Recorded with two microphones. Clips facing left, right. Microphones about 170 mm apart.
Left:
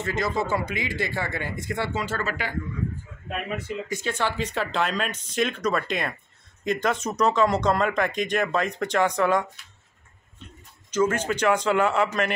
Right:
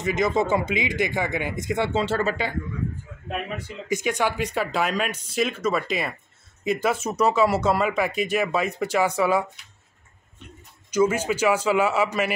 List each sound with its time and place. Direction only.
0.0 s speech: 20° right (ahead or behind)
3.9 s speech: 15° right (ahead or behind)
10.9 s speech: 10° right (ahead or behind)